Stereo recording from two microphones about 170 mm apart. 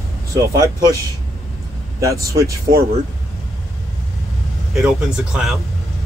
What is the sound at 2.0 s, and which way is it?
Speech, 20° right (ahead or behind).